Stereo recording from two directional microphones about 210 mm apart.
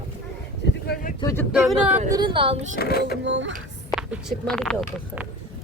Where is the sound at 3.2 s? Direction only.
60° right (ahead or behind).